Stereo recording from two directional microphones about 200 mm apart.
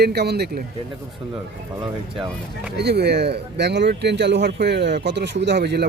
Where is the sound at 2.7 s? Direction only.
55° right (ahead or behind).